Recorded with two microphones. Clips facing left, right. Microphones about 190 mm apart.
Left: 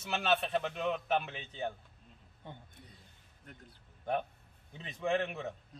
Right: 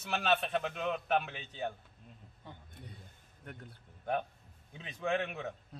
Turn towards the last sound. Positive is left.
turn(degrees=0)  # may be behind; listen again after turning